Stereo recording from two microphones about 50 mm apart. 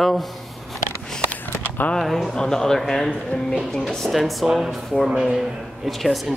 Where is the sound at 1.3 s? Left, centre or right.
Left.